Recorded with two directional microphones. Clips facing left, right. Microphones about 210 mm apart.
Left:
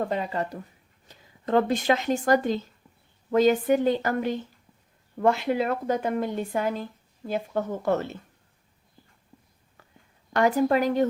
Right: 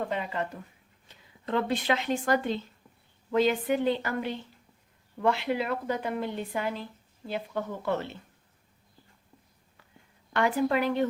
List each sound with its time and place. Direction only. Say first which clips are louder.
0.1 s a woman's voice: left 4 dB; 40° left (ahead or behind)
10.3 s a woman's voice: left 4 dB; 40° left (ahead or behind)